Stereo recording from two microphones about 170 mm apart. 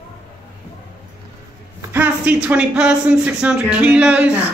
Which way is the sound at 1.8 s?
10° right (ahead or behind).